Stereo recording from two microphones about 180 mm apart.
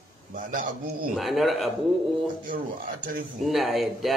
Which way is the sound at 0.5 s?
45° right (ahead or behind).